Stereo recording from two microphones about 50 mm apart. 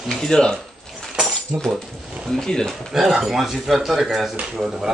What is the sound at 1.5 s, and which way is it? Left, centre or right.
Speech, right.